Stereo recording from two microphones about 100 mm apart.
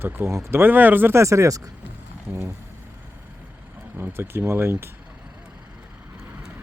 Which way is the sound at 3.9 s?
25° right (ahead or behind).